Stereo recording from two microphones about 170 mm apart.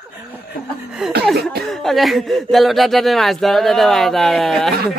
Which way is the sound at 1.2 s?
Centre (ahead or behind).